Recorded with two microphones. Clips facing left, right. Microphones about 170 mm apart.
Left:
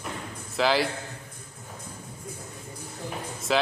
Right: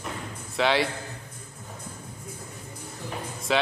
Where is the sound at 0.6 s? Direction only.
Centre (ahead or behind).